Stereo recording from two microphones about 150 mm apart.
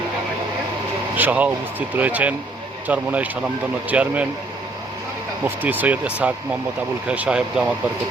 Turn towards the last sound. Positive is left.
turn(degrees=-5)  # may be behind; listen again after turning